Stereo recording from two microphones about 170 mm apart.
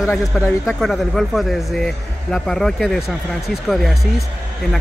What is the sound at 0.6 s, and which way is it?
Speech, centre (ahead or behind).